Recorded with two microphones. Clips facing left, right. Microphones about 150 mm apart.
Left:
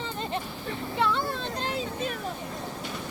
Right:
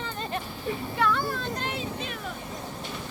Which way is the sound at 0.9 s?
25° left (ahead or behind).